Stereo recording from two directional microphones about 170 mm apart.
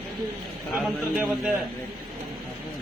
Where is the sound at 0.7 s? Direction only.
10° right (ahead or behind).